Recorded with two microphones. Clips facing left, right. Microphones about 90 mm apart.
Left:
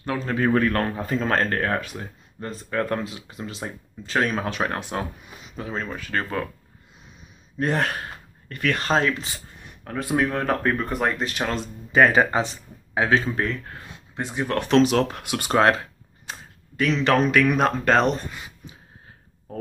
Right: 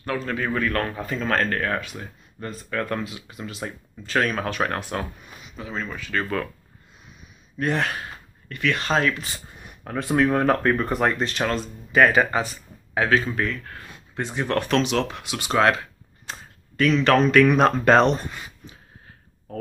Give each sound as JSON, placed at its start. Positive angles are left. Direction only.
{"t": 0.1, "sound": "a man's voice", "side_deg": 15}
{"t": 0.7, "sound": "speech", "side_deg": 30}
{"t": 3.6, "sound": "speech", "side_deg": 20}
{"t": 5.6, "sound": "speech", "side_deg": 45}
{"t": 7.5, "sound": "speech", "side_deg": 35}
{"t": 9.8, "sound": "speech", "side_deg": 5}
{"t": 13.7, "sound": "speech", "side_deg": 20}
{"t": 14.7, "sound": "speech", "side_deg": 40}
{"t": 16.3, "sound": "a sound", "side_deg": 15}
{"t": 17.4, "sound": "speech", "side_deg": 0}